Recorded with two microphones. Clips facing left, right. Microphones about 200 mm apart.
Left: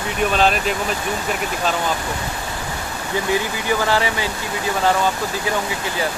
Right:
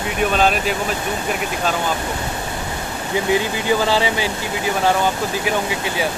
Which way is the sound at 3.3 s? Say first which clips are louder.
Right 3 dB; 20° right (ahead or behind).